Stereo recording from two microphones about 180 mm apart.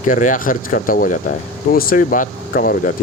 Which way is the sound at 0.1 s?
45° left (ahead or behind).